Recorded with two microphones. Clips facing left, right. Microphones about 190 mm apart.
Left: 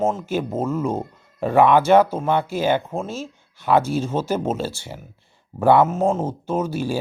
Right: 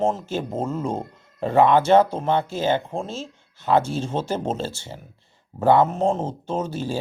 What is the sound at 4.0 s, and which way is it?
Speech, 10° left (ahead or behind).